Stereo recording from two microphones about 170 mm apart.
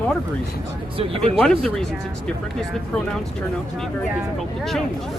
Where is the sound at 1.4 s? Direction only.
Centre (ahead or behind).